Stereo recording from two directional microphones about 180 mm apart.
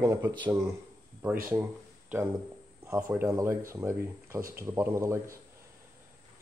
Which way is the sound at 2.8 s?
10° right (ahead or behind).